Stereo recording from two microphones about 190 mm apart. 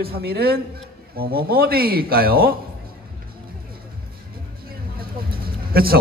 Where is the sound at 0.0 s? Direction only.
55° right (ahead or behind).